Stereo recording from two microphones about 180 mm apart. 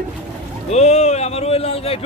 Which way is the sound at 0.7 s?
40° left (ahead or behind).